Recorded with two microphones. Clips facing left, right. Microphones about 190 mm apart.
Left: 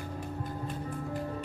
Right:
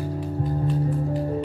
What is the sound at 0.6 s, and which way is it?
Music, 40° right (ahead or behind).